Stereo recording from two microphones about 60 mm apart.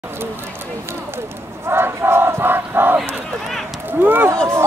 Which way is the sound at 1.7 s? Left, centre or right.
Right.